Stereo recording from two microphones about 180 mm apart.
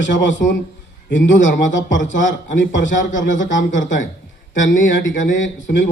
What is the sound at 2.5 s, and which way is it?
Speech, 90° left.